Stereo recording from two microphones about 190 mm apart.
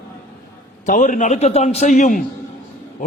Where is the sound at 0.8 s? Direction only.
45° left (ahead or behind).